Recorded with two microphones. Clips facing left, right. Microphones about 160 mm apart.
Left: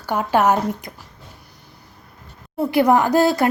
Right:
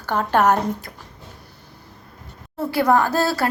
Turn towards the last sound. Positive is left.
turn(degrees=15)  # may be behind; listen again after turning